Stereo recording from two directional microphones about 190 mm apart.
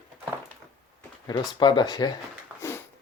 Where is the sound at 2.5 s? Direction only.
5° right (ahead or behind).